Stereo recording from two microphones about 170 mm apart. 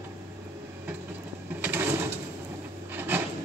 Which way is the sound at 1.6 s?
10° right (ahead or behind).